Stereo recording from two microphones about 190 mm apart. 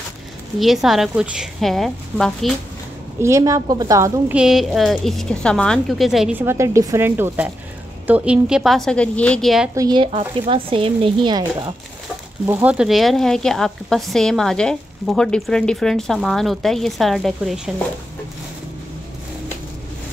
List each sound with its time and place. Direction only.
0.6 s speech: centre (ahead or behind)
3.2 s a woman's voice: 15° right (ahead or behind)
4.3 s speech: 5° right (ahead or behind)
9.8 s a woman's voice: 25° right (ahead or behind)
12.4 s speech: 10° right (ahead or behind)